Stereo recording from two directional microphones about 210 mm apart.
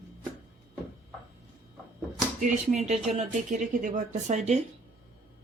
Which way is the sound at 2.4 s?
35° right (ahead or behind).